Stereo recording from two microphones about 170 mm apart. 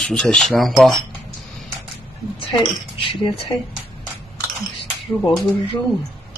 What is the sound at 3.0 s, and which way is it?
Speech, 30° left (ahead or behind).